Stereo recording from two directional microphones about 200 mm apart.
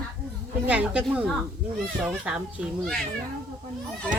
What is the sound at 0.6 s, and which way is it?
Speech, 5° right (ahead or behind).